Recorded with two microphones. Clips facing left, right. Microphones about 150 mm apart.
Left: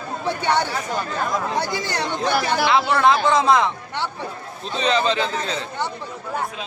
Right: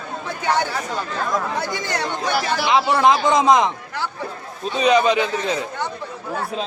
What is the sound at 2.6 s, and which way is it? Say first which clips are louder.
A man's voice: right 2 dB; 15° right (ahead or behind).